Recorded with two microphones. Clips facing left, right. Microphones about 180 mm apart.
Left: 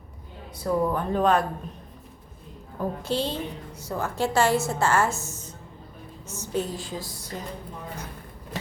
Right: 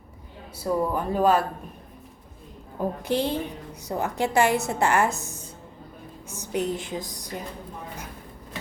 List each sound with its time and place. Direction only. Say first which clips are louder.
0.5 s a woman's voice: left 1 dB; 10° right (ahead or behind)
2.7 s a woman's voice: right 2 dB; 15° right (ahead or behind)